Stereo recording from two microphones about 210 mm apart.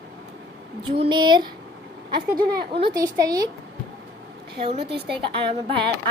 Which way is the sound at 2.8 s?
15° right (ahead or behind).